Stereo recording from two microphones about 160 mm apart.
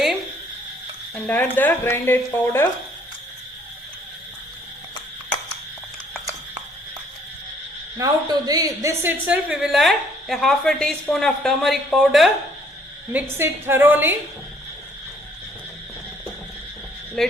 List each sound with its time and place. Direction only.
1.1 s speech: 10° left (ahead or behind)
7.9 s a woman's voice: 25° right (ahead or behind)
9.2 s a woman's voice: 5° right (ahead or behind)
13.1 s a woman's voice: 15° right (ahead or behind)